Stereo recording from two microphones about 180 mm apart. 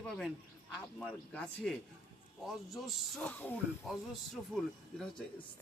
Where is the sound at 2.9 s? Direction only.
5° left (ahead or behind).